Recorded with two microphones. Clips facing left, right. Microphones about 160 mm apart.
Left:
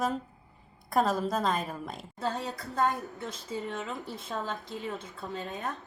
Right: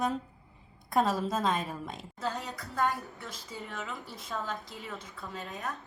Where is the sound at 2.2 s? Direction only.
30° left (ahead or behind).